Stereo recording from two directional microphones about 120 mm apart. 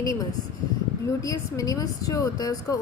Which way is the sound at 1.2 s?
30° left (ahead or behind).